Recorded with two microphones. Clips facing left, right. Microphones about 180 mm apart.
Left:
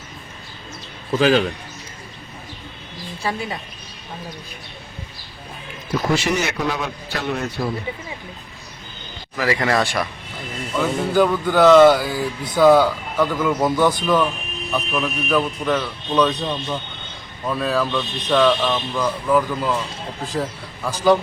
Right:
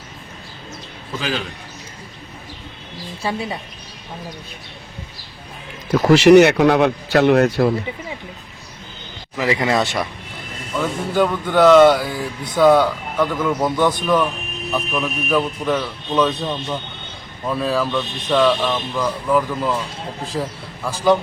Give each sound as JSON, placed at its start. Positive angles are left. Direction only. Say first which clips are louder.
{"t": 1.2, "sound": "a man's voice", "louder": "left 9 dB", "side_deg": 45}
{"t": 5.9, "sound": "a man's voice", "louder": "right 11 dB", "side_deg": -75}
{"t": 9.4, "sound": "speech", "louder": "right 1 dB", "side_deg": -20}
{"t": 10.8, "sound": "a man's voice", "louder": "left 1 dB", "side_deg": 0}